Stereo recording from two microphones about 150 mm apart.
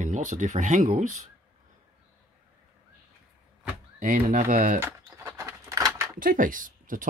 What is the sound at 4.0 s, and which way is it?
Speech, 60° right (ahead or behind).